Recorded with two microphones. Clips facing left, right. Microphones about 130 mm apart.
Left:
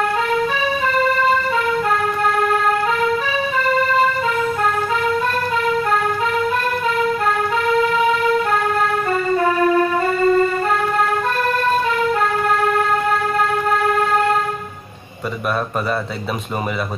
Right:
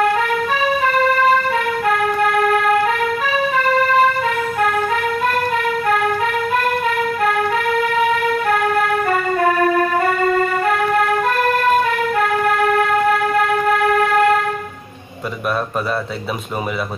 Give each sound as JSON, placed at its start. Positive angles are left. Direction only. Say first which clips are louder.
{"t": 1.9, "sound": "music", "louder": "right 2 dB", "side_deg": 30}
{"t": 6.5, "sound": "music", "louder": "right 1 dB", "side_deg": 30}
{"t": 10.0, "sound": "music", "louder": "left 1 dB", "side_deg": -55}
{"t": 11.9, "sound": "vehicle", "louder": "even", "side_deg": 30}
{"t": 13.4, "sound": "train", "louder": "right 2 dB", "side_deg": 30}